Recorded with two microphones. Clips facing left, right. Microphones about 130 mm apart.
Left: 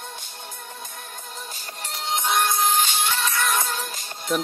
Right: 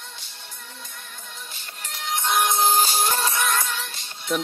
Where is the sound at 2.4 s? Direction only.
30° right (ahead or behind).